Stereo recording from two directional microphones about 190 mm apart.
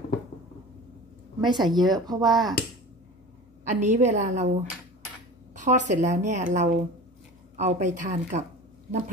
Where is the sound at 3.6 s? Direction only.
40° right (ahead or behind).